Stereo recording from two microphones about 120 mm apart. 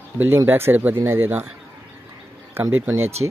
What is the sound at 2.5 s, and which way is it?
Speech, 25° right (ahead or behind).